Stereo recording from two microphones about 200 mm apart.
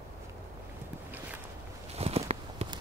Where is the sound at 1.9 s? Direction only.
30° right (ahead or behind).